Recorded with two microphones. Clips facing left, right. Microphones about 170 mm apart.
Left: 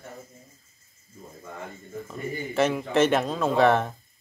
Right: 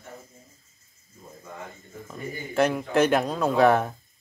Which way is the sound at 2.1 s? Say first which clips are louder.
Left 2 dB; centre (ahead or behind).